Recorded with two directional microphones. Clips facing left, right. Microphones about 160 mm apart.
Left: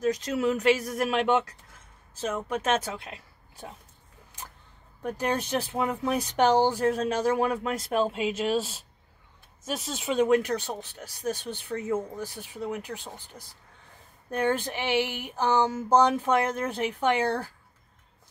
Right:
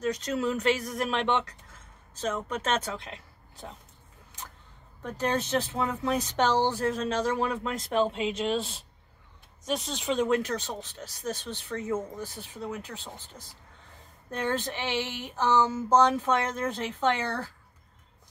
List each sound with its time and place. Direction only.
0.4 s speech: 5° left (ahead or behind)
5.0 s speech: 10° left (ahead or behind)